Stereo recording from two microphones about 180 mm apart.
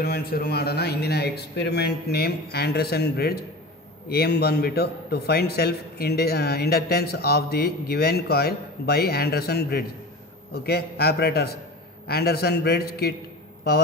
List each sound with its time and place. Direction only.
0.0 s a man's voice: 60° left (ahead or behind)